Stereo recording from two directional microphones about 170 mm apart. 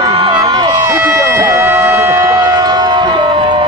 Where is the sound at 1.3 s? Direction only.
15° right (ahead or behind).